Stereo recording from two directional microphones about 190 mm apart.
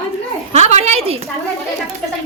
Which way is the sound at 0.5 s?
35° right (ahead or behind).